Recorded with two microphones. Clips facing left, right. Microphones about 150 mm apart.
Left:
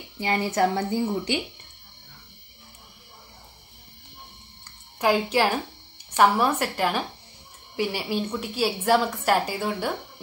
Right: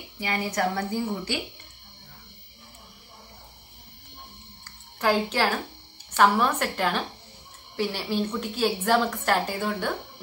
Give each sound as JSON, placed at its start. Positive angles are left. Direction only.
{"t": 0.2, "sound": "a woman's voice", "side_deg": 30}
{"t": 5.0, "sound": "a woman's voice", "side_deg": 15}